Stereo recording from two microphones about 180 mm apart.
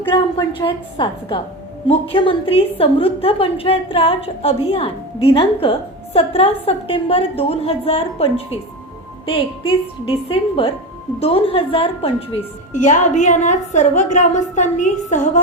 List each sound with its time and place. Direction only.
0.1 s a woman's voice: 25° left (ahead or behind); by 15.4 s 40° left (ahead or behind)